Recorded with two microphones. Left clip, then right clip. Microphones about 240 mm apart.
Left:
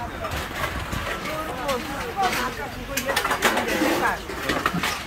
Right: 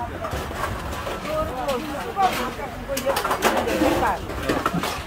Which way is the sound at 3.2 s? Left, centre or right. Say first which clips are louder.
Left 2 dB; right.